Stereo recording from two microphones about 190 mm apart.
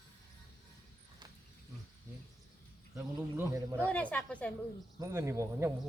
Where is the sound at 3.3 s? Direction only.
15° right (ahead or behind).